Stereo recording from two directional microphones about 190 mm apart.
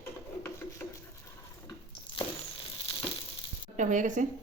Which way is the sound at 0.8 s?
10° left (ahead or behind).